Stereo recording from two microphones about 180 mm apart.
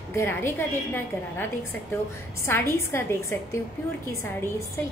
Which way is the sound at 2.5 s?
15° left (ahead or behind).